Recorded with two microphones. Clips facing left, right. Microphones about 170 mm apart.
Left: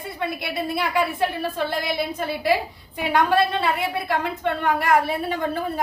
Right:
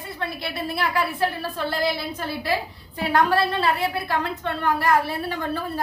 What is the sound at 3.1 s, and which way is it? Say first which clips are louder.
A woman's voice: left 1 dB; 20° left (ahead or behind).